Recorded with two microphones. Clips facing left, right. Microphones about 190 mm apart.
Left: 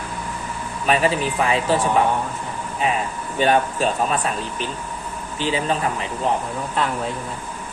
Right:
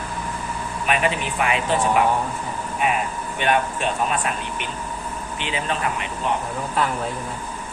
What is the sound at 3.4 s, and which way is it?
Speech, 35° left (ahead or behind).